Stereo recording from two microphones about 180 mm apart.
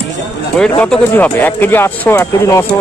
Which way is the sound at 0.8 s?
10° left (ahead or behind).